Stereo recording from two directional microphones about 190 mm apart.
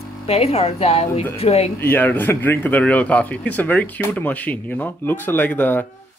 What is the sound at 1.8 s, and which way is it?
Speech, 10° left (ahead or behind).